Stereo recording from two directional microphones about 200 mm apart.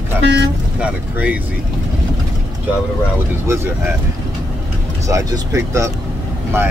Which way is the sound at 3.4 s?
10° right (ahead or behind).